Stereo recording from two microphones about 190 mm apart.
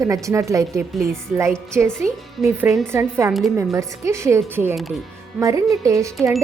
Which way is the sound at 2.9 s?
15° right (ahead or behind).